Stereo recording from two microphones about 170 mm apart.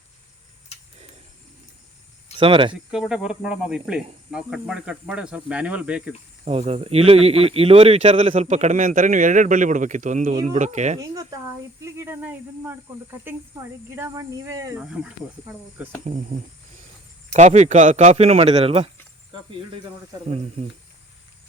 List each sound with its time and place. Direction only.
2.4 s speech: 30° right (ahead or behind)
2.7 s speech: 5° right (ahead or behind)
6.4 s speech: 35° right (ahead or behind)
10.9 s a woman's voice: 20° right (ahead or behind)
16.0 s speech: 45° right (ahead or behind)